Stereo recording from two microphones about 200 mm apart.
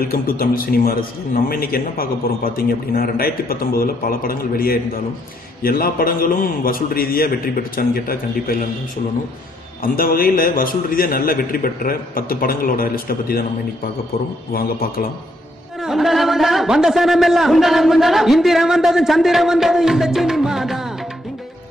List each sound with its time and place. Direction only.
0.0 s a man's voice: 45° left (ahead or behind)
9.9 s a man's voice: 50° left (ahead or behind)
14.5 s a man's voice: 50° left (ahead or behind)
15.8 s a man's voice: centre (ahead or behind)